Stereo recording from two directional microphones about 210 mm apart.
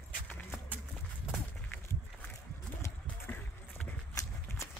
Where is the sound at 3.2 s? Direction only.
10° left (ahead or behind).